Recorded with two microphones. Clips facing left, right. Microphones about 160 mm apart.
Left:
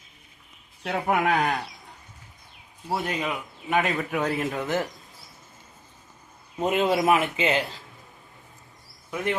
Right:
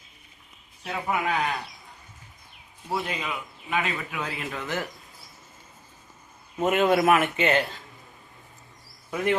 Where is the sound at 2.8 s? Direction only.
40° left (ahead or behind).